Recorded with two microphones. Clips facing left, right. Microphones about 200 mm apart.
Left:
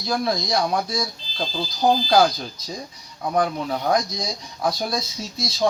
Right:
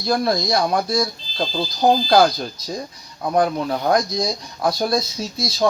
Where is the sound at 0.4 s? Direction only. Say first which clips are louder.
Right 3 dB; 60° right (ahead or behind).